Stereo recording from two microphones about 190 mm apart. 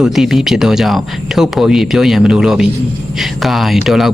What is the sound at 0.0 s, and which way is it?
Speech, centre (ahead or behind).